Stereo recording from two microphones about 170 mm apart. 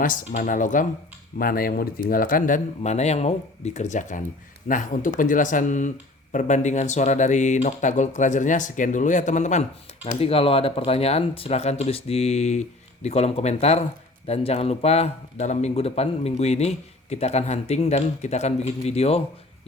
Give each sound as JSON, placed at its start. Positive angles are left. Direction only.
{"t": 0.0, "sound": "speech", "side_deg": 50}